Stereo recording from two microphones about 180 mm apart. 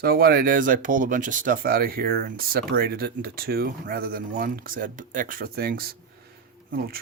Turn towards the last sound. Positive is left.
turn(degrees=-55)  # may be behind; listen again after turning